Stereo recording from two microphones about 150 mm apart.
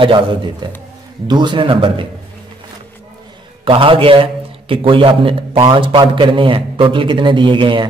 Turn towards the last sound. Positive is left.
turn(degrees=-35)  # may be behind; listen again after turning